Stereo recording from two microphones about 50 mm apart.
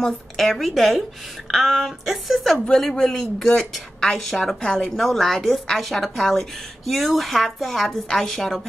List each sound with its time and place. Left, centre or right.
0.0 s a woman's voice: centre
2.8 s speech: centre
4.6 s speech: centre
4.9 s a woman's voice: centre